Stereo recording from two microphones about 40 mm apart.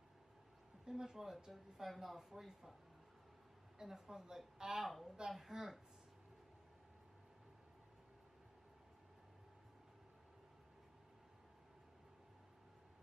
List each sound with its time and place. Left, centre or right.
0.8 s speech: centre
3.7 s speech: centre
4.8 s a woman's voice: centre